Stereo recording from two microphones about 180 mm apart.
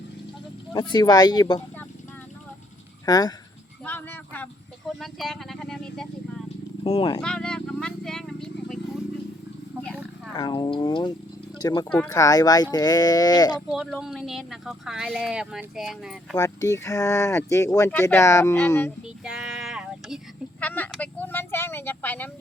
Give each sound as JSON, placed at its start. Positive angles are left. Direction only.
{"t": 0.7, "sound": "speech", "side_deg": 25}
{"t": 3.1, "sound": "speech", "side_deg": 20}
{"t": 3.8, "sound": "speech", "side_deg": 10}
{"t": 6.8, "sound": "speech", "side_deg": 30}
{"t": 7.2, "sound": "a sound", "side_deg": 5}
{"t": 10.3, "sound": "speech", "side_deg": 25}
{"t": 13.7, "sound": "speech", "side_deg": 0}
{"t": 16.4, "sound": "speech", "side_deg": 20}
{"t": 19.0, "sound": "child singing", "side_deg": -5}
{"t": 20.6, "sound": "a sound", "side_deg": 10}